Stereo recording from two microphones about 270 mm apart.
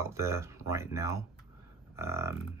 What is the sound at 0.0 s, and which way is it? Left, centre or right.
Speech, centre.